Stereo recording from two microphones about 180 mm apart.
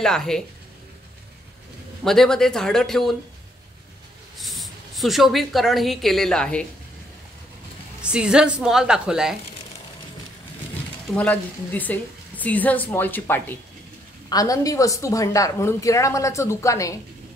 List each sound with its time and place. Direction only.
0.0 s a woman's voice: 5° left (ahead or behind)
2.0 s a woman's voice: centre (ahead or behind)
4.4 s speech: centre (ahead or behind)
8.0 s a woman's voice: 5° right (ahead or behind)
11.1 s speech: 10° left (ahead or behind)